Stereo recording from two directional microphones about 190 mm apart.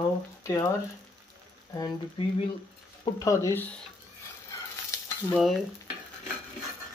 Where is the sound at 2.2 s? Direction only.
25° left (ahead or behind).